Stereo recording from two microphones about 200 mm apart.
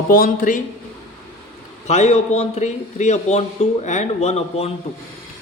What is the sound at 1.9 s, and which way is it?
A man's voice, 35° left (ahead or behind).